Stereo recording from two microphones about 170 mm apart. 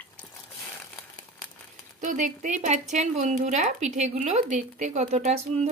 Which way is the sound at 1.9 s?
50° right (ahead or behind).